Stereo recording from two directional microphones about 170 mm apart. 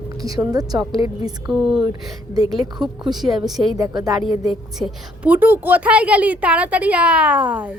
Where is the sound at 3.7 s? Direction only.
20° right (ahead or behind).